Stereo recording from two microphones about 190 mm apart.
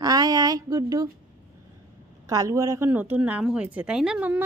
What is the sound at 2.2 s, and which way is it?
Speech, 20° right (ahead or behind).